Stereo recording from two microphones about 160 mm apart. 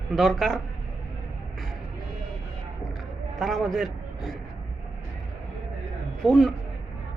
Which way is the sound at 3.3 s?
Centre (ahead or behind).